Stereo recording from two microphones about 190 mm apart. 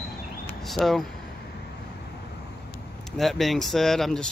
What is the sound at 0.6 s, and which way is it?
Speech, centre (ahead or behind).